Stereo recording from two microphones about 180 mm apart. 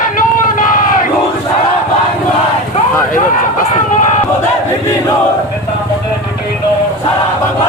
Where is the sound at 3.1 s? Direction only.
45° left (ahead or behind).